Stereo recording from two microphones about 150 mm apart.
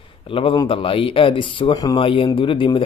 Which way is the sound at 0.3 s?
35° left (ahead or behind).